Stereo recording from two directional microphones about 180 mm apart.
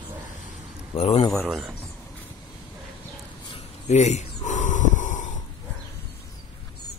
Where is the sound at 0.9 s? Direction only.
35° left (ahead or behind).